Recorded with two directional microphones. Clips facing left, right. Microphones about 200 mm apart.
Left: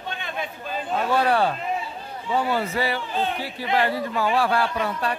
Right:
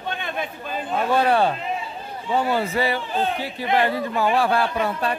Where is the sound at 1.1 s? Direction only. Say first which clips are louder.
Right 2 dB; 20° right (ahead or behind).